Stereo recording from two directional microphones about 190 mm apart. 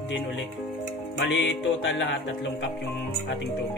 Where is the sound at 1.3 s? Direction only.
70° left (ahead or behind).